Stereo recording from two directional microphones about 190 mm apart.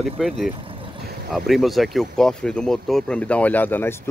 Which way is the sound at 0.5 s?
25° right (ahead or behind).